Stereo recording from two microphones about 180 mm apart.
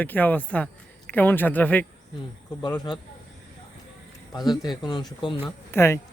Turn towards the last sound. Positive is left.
turn(degrees=15)  # may be behind; listen again after turning